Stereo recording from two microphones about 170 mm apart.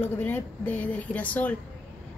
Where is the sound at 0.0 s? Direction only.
10° left (ahead or behind).